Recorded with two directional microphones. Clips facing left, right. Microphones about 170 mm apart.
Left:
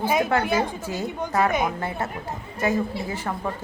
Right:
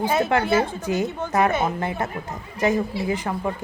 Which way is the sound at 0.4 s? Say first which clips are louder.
Right 3 dB; 15° left (ahead or behind).